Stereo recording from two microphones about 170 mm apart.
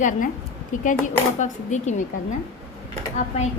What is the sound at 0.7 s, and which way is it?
Speech, 50° left (ahead or behind).